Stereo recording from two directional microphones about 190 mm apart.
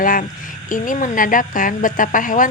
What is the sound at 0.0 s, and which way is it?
A woman's voice, 45° left (ahead or behind).